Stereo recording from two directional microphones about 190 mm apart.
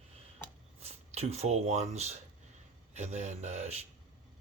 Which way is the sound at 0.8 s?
35° right (ahead or behind).